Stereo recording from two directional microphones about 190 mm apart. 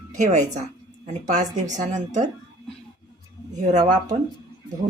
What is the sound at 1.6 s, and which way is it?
Speech, 40° right (ahead or behind).